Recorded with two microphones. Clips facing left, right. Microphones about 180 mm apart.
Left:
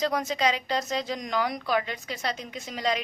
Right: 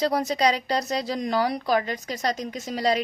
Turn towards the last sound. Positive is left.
turn(degrees=-35)  # may be behind; listen again after turning